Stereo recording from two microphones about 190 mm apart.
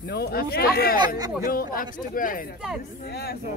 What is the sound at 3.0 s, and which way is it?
Speech, 55° left (ahead or behind).